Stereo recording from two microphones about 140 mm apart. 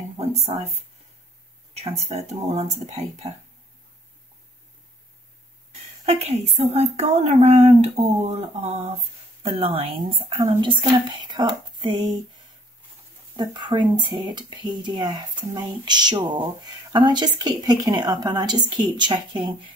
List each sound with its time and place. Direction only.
0.2 s a sound: 50° right (ahead or behind)
1.7 s speech: 50° right (ahead or behind)
6.0 s speech: 50° right (ahead or behind)
13.4 s speech: 30° right (ahead or behind)